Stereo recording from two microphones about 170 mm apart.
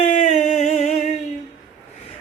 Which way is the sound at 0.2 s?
45° left (ahead or behind).